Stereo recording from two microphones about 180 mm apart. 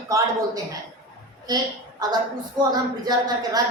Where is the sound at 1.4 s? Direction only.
20° right (ahead or behind).